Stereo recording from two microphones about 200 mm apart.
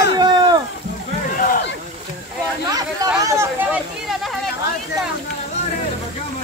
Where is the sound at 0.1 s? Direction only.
20° right (ahead or behind).